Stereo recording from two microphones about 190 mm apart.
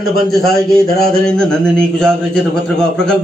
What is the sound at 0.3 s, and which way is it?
Speech, 55° left (ahead or behind).